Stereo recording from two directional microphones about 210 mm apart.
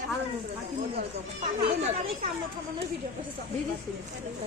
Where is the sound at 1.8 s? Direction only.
30° right (ahead or behind).